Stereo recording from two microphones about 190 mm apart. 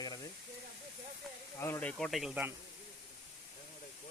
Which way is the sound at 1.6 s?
10° left (ahead or behind).